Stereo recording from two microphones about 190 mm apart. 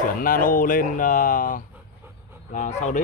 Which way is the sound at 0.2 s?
45° left (ahead or behind).